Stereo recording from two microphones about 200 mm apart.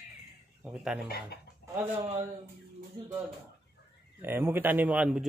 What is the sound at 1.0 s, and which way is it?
Speech, 50° left (ahead or behind).